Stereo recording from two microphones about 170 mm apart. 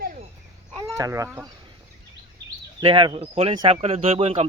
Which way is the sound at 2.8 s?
30° right (ahead or behind).